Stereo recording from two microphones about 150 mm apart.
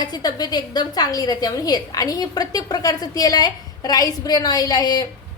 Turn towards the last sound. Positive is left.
turn(degrees=25)  # may be behind; listen again after turning